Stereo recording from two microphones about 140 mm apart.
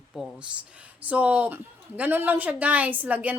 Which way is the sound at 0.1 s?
Centre (ahead or behind).